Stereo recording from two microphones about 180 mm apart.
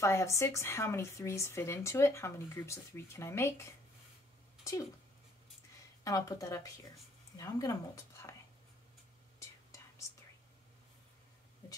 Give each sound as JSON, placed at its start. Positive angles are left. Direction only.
{"t": 0.0, "sound": "speech", "side_deg": 15}
{"t": 4.7, "sound": "speech", "side_deg": 15}
{"t": 6.0, "sound": "speech", "side_deg": 20}